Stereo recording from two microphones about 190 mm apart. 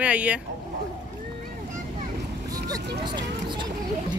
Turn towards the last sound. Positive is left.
turn(degrees=-25)  # may be behind; listen again after turning